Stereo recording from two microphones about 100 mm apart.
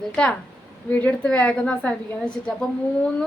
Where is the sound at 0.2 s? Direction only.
10° left (ahead or behind).